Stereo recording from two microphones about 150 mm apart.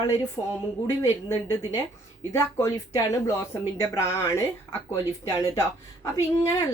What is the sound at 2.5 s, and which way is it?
Speech, 25° left (ahead or behind).